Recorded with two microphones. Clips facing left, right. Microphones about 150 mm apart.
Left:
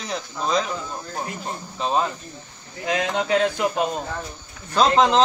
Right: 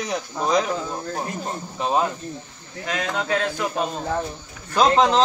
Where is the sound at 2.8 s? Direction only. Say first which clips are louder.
Left 3 dB; 20° left (ahead or behind).